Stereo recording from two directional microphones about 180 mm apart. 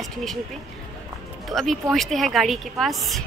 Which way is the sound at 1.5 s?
Centre (ahead or behind).